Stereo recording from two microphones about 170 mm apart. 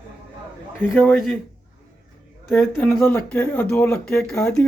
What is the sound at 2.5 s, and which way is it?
A man's voice, 10° left (ahead or behind).